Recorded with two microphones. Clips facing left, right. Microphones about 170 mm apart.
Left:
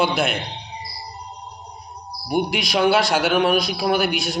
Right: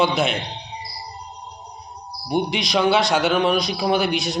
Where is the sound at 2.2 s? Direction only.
5° left (ahead or behind).